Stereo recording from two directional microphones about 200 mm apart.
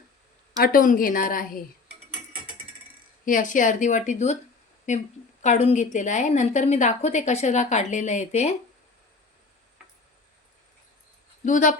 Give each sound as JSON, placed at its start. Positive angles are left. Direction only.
{"t": 0.6, "sound": "a woman's voice", "side_deg": 45}
{"t": 3.2, "sound": "a woman's voice", "side_deg": 40}
{"t": 11.4, "sound": "a woman's voice", "side_deg": 40}